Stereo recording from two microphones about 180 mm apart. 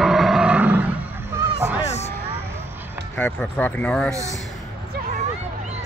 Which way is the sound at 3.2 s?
5° left (ahead or behind).